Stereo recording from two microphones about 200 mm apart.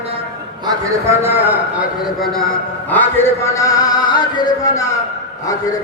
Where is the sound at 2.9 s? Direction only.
15° left (ahead or behind).